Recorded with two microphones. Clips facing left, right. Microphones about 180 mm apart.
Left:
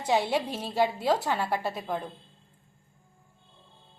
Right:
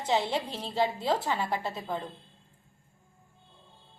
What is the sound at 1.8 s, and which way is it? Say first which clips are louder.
Speech: left 2 dB; 10° left (ahead or behind).